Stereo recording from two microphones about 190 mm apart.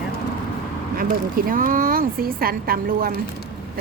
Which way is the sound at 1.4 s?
45° right (ahead or behind).